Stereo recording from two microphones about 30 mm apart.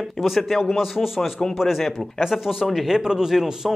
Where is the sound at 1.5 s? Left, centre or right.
Centre.